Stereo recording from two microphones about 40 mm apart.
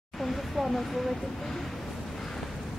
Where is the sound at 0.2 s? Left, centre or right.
Centre.